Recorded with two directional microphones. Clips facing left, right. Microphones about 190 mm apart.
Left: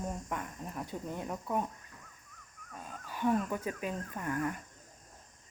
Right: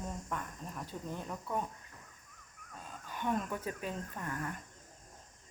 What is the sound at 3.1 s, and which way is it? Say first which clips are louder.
Speech: left 5 dB; 5° left (ahead or behind).